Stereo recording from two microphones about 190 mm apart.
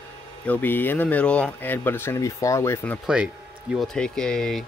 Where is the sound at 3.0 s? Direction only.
5° right (ahead or behind).